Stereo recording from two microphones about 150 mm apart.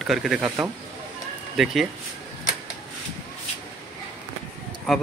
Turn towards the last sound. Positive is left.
turn(degrees=0)  # may be behind; listen again after turning